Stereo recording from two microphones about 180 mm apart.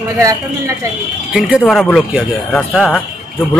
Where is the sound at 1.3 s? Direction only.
5° right (ahead or behind).